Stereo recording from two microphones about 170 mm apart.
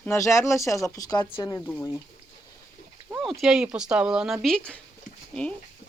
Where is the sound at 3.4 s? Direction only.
5° right (ahead or behind).